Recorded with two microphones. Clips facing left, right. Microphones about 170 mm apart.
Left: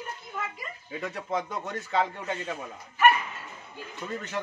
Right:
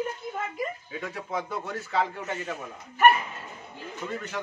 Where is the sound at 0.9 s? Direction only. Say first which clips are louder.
Left 5 dB; centre (ahead or behind).